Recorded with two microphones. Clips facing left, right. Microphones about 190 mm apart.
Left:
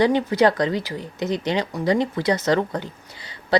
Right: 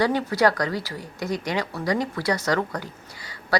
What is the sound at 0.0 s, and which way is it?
Speech, 20° left (ahead or behind).